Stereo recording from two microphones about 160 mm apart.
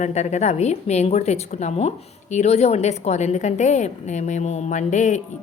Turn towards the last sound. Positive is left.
turn(degrees=50)  # may be behind; listen again after turning